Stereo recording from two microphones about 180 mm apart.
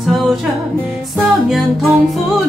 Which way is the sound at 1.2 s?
Centre (ahead or behind).